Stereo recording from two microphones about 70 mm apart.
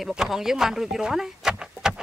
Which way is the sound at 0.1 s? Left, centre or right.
Centre.